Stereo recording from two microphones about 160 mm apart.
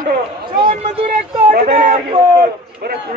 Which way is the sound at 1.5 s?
55° right (ahead or behind).